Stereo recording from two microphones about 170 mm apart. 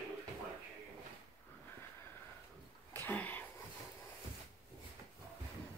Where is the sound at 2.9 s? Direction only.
10° left (ahead or behind).